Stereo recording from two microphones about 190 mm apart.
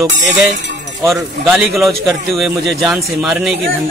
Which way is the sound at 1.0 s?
Centre (ahead or behind).